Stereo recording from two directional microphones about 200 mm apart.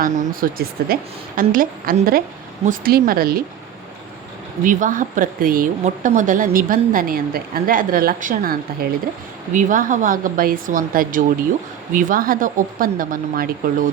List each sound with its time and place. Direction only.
0.0 s speech: 45° right (ahead or behind)
4.6 s speech: 40° right (ahead or behind)